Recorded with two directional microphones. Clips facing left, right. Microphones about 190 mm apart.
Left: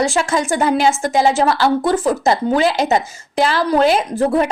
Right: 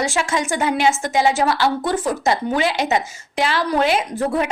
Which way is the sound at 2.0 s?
30° left (ahead or behind).